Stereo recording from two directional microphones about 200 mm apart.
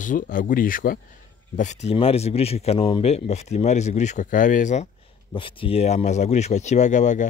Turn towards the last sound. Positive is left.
turn(degrees=35)  # may be behind; listen again after turning